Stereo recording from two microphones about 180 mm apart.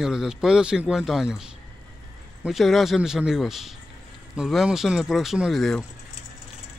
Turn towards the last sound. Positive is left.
turn(degrees=0)  # may be behind; listen again after turning